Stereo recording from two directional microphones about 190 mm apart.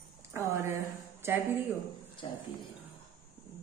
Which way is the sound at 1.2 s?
10° right (ahead or behind).